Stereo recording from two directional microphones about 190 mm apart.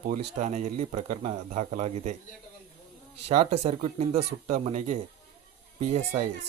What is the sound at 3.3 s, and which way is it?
Speech, 35° right (ahead or behind).